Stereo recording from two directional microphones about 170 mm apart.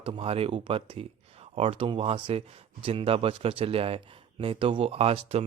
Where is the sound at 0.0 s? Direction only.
35° right (ahead or behind).